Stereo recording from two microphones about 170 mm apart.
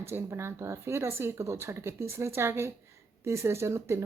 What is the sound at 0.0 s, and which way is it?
Speech, 15° right (ahead or behind).